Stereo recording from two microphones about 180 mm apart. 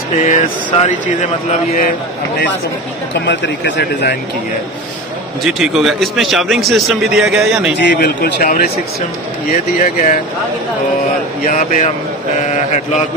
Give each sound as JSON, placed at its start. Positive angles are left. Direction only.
{"t": 0.3, "sound": "speech", "side_deg": 45}
{"t": 3.3, "sound": "speech", "side_deg": 75}
{"t": 5.4, "sound": "a man's voice", "side_deg": 0}
{"t": 7.8, "sound": "a man's voice", "side_deg": 65}
{"t": 11.4, "sound": "speech", "side_deg": 45}